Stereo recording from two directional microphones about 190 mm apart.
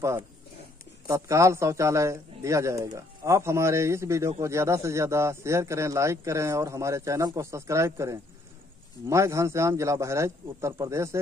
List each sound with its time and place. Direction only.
1.0 s speech: 15° right (ahead or behind)